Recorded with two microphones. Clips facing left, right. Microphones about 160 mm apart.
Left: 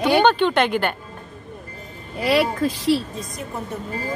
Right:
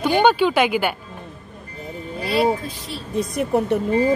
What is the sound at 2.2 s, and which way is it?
Speech, 85° left.